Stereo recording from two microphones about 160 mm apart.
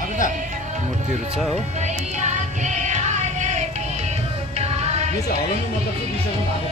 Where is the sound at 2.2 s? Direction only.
50° right (ahead or behind).